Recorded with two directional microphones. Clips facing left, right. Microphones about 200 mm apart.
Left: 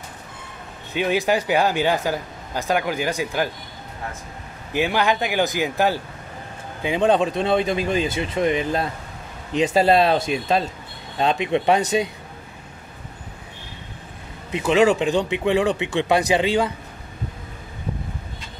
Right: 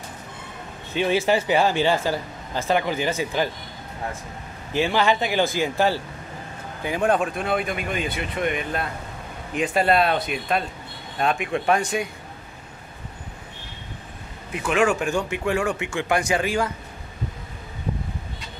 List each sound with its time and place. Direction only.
0.9 s speech: 15° left (ahead or behind)
4.7 s speech: 15° left (ahead or behind)
14.5 s speech: 25° left (ahead or behind)